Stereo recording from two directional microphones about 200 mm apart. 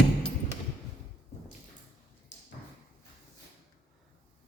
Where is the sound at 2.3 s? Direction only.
65° left (ahead or behind).